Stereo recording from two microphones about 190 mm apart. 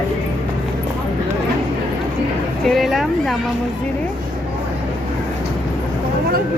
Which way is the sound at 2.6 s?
Centre (ahead or behind).